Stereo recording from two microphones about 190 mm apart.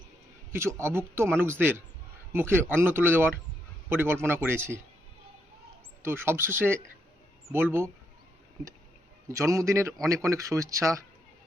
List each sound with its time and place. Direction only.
0.5 s a man's voice: 15° right (ahead or behind)
6.0 s a man's voice: 10° right (ahead or behind)
9.3 s a man's voice: 15° right (ahead or behind)